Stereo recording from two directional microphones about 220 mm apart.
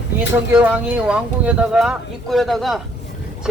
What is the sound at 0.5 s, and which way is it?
Speech, 5° right (ahead or behind).